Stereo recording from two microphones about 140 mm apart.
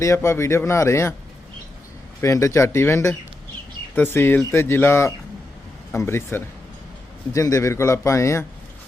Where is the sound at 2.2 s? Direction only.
20° left (ahead or behind).